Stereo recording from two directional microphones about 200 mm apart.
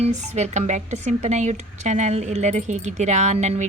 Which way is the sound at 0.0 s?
35° right (ahead or behind).